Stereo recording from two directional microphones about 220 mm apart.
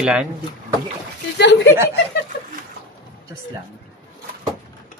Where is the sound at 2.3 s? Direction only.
50° left (ahead or behind).